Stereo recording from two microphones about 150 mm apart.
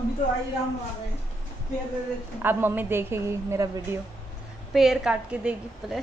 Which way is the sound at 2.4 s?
15° right (ahead or behind).